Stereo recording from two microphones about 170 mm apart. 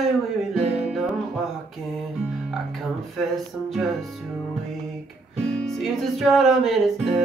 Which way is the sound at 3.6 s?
Centre (ahead or behind).